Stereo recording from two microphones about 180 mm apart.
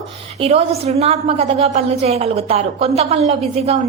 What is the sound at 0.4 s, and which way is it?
A woman's voice, 35° right (ahead or behind).